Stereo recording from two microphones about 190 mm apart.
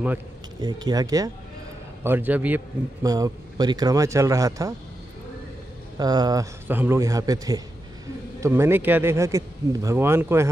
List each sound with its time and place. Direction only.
0.6 s a man's voice: 20° right (ahead or behind)
5.9 s a man's voice: 20° right (ahead or behind)